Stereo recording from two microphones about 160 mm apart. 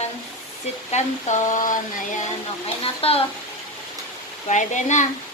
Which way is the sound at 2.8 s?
35° left (ahead or behind).